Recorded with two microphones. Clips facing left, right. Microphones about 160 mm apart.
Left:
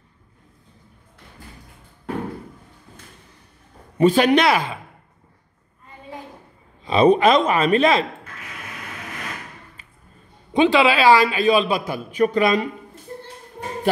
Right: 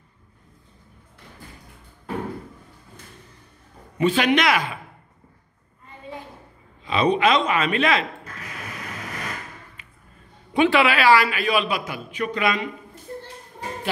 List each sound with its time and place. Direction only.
4.0 s a man's voice: 40° left (ahead or behind)
6.8 s a man's voice: 35° left (ahead or behind)
10.5 s a man's voice: 20° left (ahead or behind); by 12.6 s 35° left (ahead or behind)